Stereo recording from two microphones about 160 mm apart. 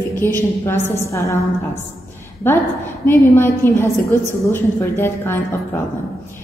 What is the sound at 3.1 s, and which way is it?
A woman's voice, 15° left (ahead or behind).